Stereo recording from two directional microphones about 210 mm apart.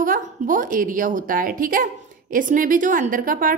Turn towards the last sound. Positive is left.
turn(degrees=-40)  # may be behind; listen again after turning